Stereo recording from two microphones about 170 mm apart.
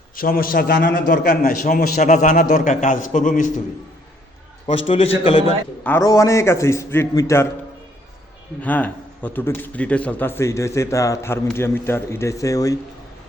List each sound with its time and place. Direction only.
0.2 s a man's voice: 60° left (ahead or behind)
4.9 s a man's voice: 35° left (ahead or behind)
5.8 s speech: 15° left (ahead or behind)
8.6 s speech: 10° left (ahead or behind)